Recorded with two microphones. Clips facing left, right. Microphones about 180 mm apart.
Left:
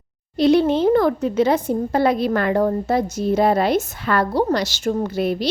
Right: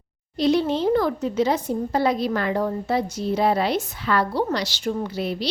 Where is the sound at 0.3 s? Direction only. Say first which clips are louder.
Left 5 dB; 60° left (ahead or behind).